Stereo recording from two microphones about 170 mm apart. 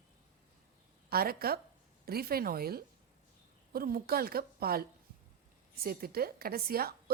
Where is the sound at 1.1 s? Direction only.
65° right (ahead or behind).